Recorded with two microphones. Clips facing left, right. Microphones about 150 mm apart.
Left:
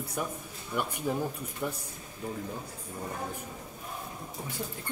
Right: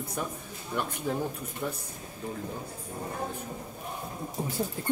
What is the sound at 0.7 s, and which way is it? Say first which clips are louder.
Speech: even; 10° left (ahead or behind).